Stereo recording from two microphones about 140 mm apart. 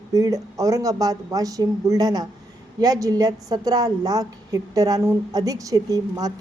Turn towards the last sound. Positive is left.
turn(degrees=-25)  # may be behind; listen again after turning